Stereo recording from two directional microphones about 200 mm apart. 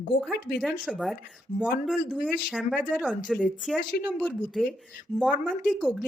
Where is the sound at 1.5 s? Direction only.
35° left (ahead or behind).